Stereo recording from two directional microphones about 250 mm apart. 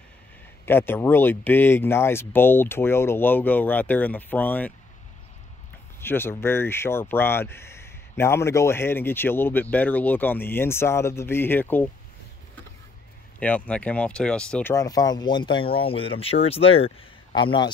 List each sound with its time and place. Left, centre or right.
0.7 s speech: centre
5.9 s speech: centre
13.4 s speech: centre